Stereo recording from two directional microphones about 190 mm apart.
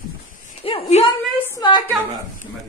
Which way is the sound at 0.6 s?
30° left (ahead or behind).